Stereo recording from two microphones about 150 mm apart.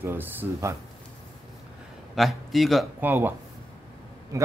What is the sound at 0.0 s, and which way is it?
Speech, 15° right (ahead or behind).